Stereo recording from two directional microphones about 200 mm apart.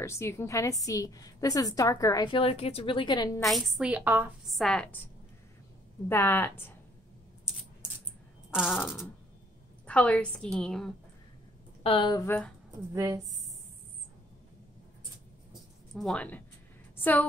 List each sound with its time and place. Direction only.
0.0 s a woman's voice: 15° left (ahead or behind)
3.4 s a woman's voice: centre (ahead or behind)
4.6 s a woman's voice: 5° left (ahead or behind)
6.0 s a woman's voice: 10° left (ahead or behind)
8.8 s a woman's voice: centre (ahead or behind)
11.8 s a woman's voice: 25° left (ahead or behind); by 12.5 s 10° left (ahead or behind)
12.9 s a woman's voice: 15° right (ahead or behind)
15.9 s a woman's voice: centre (ahead or behind)